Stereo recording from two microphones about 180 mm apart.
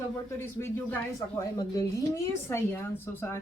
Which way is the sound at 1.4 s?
20° left (ahead or behind).